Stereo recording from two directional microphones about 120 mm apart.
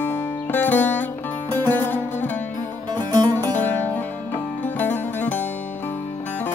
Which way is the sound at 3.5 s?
15° left (ahead or behind).